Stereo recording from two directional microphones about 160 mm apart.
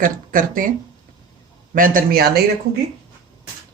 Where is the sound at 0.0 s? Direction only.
55° right (ahead or behind).